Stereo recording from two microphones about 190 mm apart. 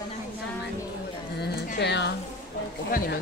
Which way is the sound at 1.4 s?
60° left (ahead or behind).